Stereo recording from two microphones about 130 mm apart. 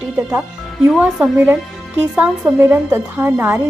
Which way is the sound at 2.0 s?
15° right (ahead or behind).